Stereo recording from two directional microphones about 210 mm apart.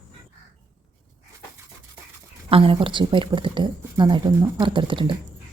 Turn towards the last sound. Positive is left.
turn(degrees=-25)  # may be behind; listen again after turning